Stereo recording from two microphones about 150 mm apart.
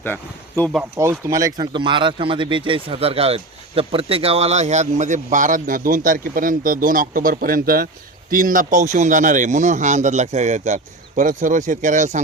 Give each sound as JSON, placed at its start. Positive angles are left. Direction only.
{"t": 0.0, "sound": "speech", "side_deg": 10}
{"t": 1.0, "sound": "speech", "side_deg": -15}
{"t": 8.3, "sound": "a man's voice", "side_deg": -65}